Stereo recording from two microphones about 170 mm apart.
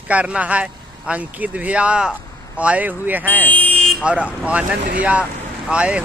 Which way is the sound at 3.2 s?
10° left (ahead or behind).